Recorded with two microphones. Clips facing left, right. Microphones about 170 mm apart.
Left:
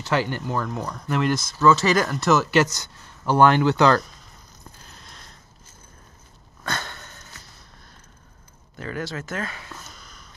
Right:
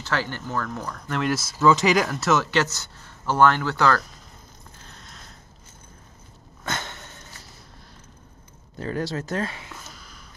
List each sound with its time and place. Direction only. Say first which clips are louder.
0.0 s speech: left 4 dB; 15° left (ahead or behind)
6.6 s sniff: left 1 dB; 20° right (ahead or behind)
8.7 s speech: right 3 dB; 30° right (ahead or behind)